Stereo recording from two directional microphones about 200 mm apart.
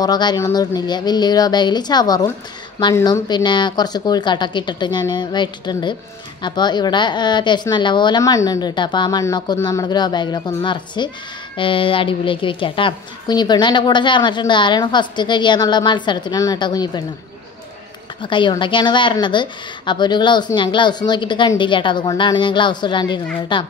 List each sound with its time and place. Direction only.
0.0 s a woman's voice: 20° left (ahead or behind)
18.2 s a woman's voice: 25° left (ahead or behind)